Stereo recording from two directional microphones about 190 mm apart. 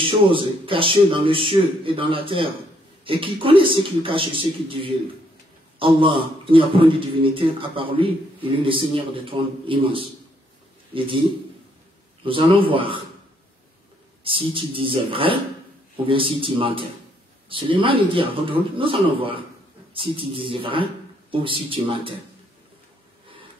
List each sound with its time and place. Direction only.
0.0 s a man's voice: 25° right (ahead or behind)
14.2 s a man's voice: 25° right (ahead or behind)